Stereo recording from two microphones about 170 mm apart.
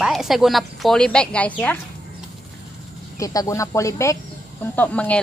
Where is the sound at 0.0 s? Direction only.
Centre (ahead or behind).